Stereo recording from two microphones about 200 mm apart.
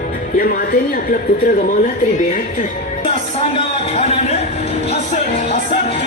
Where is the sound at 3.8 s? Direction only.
30° left (ahead or behind).